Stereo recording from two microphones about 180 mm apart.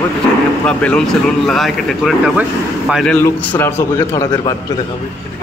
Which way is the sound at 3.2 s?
10° left (ahead or behind).